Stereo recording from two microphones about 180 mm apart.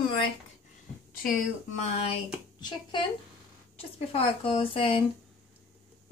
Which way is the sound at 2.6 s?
25° left (ahead or behind).